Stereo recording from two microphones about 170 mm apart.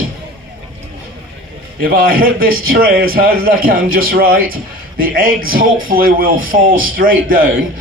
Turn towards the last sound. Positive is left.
turn(degrees=-55)  # may be behind; listen again after turning